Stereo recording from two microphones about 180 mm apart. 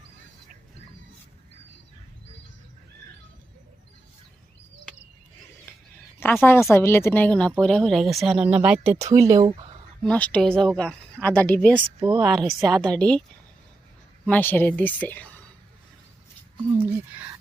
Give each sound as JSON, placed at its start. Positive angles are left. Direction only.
{"t": 6.1, "sound": "speech", "side_deg": 10}
{"t": 9.0, "sound": "speech", "side_deg": -15}
{"t": 10.0, "sound": "speech", "side_deg": 5}
{"t": 12.0, "sound": "speech", "side_deg": -10}
{"t": 14.3, "sound": "speech", "side_deg": 10}